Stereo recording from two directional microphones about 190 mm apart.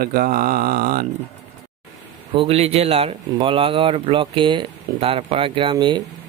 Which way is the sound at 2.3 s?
30° right (ahead or behind).